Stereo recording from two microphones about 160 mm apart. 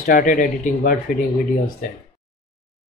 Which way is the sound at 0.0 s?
60° left (ahead or behind).